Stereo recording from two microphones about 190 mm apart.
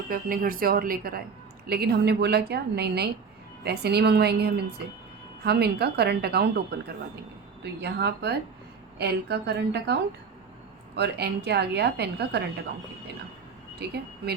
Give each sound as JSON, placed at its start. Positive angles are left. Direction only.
{"t": 0.1, "sound": "speech", "side_deg": -50}
{"t": 13.7, "sound": "speech", "side_deg": -60}